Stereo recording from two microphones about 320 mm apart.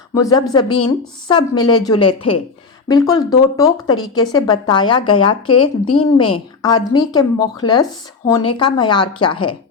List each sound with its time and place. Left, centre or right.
0.1 s a woman's voice: centre